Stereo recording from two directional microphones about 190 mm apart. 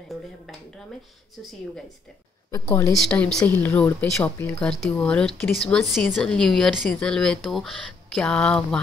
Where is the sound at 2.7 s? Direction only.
15° left (ahead or behind).